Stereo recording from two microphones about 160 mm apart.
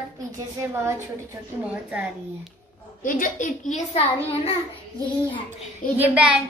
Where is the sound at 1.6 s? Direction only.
10° right (ahead or behind).